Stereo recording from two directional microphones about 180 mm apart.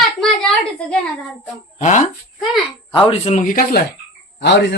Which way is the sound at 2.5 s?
25° left (ahead or behind).